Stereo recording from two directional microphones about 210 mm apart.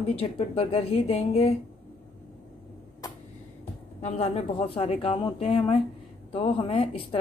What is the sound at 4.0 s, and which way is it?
Speech, 30° left (ahead or behind).